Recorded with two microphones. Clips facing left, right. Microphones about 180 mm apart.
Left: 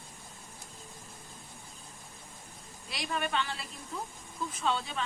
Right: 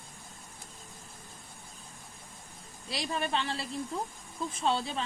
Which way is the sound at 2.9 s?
30° right (ahead or behind).